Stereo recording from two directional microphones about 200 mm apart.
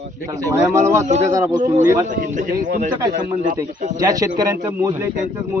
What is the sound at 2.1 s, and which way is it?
Speech, 40° right (ahead or behind).